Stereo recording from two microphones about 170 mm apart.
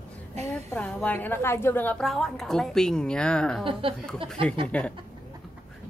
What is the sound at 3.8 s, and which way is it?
Speech, 30° right (ahead or behind).